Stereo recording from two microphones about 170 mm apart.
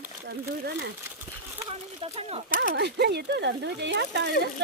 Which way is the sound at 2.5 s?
65° right (ahead or behind).